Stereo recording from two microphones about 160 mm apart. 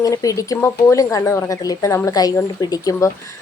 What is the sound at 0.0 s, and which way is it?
A woman's voice, 20° left (ahead or behind).